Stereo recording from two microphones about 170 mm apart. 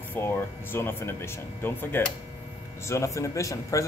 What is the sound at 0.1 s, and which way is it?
Speech, 15° left (ahead or behind).